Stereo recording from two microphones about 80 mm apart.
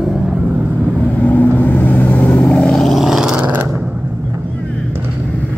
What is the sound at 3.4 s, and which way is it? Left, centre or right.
Dog, right.